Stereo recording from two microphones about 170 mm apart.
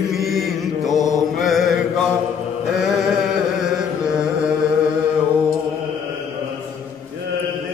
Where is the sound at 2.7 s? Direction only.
5° right (ahead or behind).